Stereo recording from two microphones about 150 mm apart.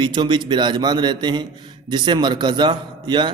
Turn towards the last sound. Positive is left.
turn(degrees=-30)  # may be behind; listen again after turning